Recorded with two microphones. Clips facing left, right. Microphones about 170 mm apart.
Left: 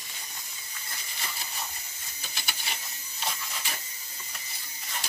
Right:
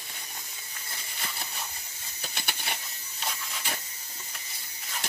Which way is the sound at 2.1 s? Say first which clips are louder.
Right 3 dB; 60° right (ahead or behind).